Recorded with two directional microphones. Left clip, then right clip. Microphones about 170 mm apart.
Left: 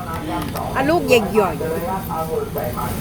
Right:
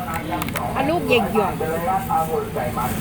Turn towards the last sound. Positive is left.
turn(degrees=25)  # may be behind; listen again after turning